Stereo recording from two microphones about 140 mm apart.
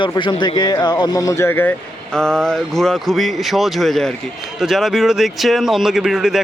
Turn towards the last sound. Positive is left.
turn(degrees=-5)  # may be behind; listen again after turning